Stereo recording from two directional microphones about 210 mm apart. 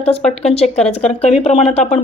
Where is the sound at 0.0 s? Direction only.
30° left (ahead or behind).